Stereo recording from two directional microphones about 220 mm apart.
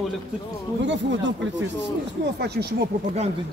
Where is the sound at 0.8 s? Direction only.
55° right (ahead or behind).